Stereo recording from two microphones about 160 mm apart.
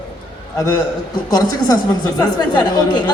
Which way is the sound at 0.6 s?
20° left (ahead or behind).